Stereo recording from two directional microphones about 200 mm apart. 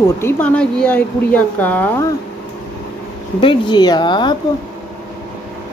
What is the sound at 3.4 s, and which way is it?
Speech, 25° left (ahead or behind).